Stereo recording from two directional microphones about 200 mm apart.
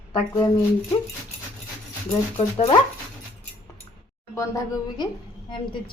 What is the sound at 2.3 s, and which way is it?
Speech, 30° left (ahead or behind).